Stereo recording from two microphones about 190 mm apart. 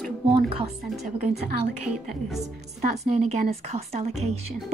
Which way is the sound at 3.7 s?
35° right (ahead or behind).